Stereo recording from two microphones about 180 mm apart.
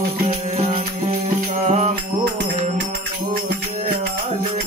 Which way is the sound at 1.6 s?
40° right (ahead or behind).